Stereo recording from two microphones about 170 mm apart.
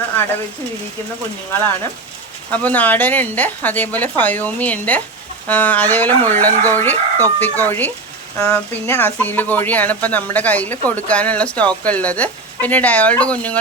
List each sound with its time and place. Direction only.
2.5 s speech: 10° left (ahead or behind)